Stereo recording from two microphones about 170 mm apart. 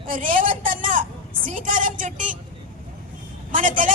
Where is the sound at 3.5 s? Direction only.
50° right (ahead or behind).